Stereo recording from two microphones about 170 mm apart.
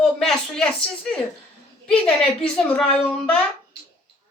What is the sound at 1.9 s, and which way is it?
A woman's voice, 5° left (ahead or behind).